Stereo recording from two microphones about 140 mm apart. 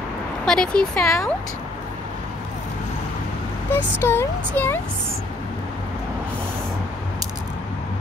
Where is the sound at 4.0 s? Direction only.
15° left (ahead or behind).